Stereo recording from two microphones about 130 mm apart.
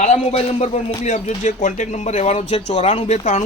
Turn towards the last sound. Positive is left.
turn(degrees=65)  # may be behind; listen again after turning